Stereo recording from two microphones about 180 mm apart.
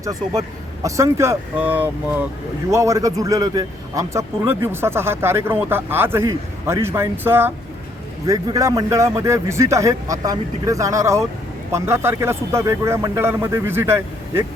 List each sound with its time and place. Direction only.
0.0 s a man's voice: 20° right (ahead or behind)